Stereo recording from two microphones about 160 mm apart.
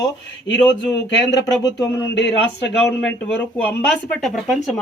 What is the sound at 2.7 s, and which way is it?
Speech, 5° left (ahead or behind).